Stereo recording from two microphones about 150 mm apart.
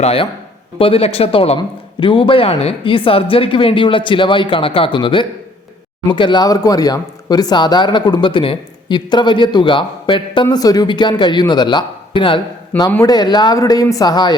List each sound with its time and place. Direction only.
0.0 s speech: 40° left (ahead or behind)